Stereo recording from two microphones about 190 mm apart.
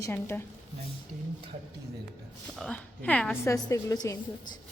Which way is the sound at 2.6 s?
5° left (ahead or behind).